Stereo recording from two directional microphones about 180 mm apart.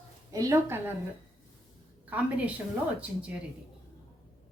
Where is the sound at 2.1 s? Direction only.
10° right (ahead or behind).